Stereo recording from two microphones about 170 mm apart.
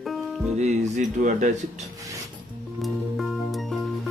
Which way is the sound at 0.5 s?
40° right (ahead or behind).